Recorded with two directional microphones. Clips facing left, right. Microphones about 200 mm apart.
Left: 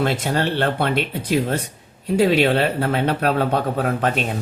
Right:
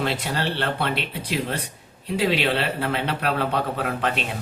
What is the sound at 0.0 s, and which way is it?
A man's voice, 45° left (ahead or behind).